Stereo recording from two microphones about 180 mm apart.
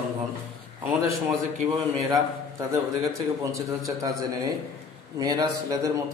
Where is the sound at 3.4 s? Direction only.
20° right (ahead or behind).